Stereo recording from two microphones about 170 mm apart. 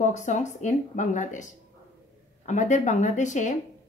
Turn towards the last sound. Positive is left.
turn(degrees=45)  # may be behind; listen again after turning